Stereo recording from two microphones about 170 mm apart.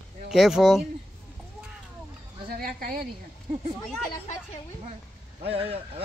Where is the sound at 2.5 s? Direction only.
60° right (ahead or behind).